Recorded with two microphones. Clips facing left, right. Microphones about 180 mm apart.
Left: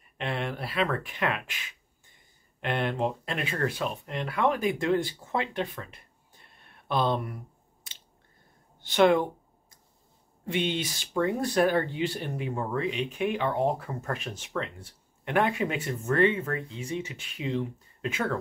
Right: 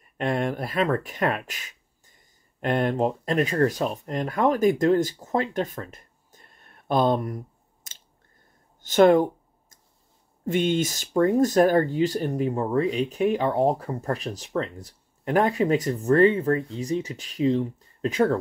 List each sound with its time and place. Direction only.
0.2 s speech: 45° right (ahead or behind)
8.8 s a sound: 45° right (ahead or behind)
10.4 s speech: 45° right (ahead or behind)